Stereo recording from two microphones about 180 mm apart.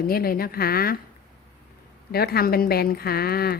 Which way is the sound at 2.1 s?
60° left (ahead or behind).